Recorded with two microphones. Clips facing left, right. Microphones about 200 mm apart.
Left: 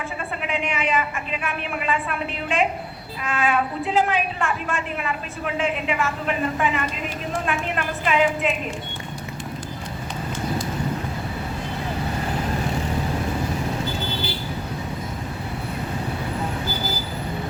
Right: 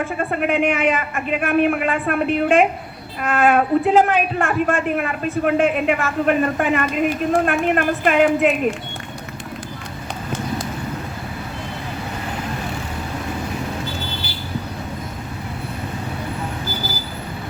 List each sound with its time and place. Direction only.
0.0 s speech: 55° right (ahead or behind)